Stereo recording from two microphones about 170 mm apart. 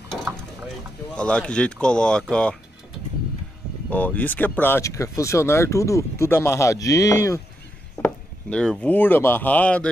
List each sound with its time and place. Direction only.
1.1 s speech: 5° left (ahead or behind)
3.9 s speech: 10° left (ahead or behind)
8.0 s speech: 5° left (ahead or behind)